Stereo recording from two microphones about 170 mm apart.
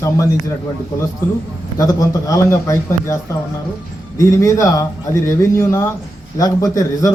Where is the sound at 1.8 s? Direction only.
20° left (ahead or behind).